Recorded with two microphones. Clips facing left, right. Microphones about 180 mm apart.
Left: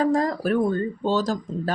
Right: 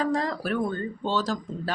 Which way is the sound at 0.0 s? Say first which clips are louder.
Left 5 dB; 45° left (ahead or behind).